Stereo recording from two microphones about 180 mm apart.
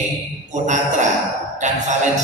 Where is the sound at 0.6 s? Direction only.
40° right (ahead or behind).